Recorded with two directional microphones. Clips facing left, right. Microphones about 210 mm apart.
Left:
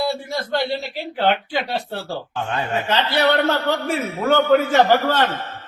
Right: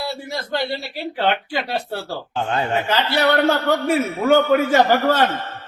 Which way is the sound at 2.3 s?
30° right (ahead or behind).